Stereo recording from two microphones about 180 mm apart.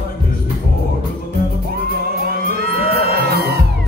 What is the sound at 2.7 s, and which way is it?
Music, 60° right (ahead or behind).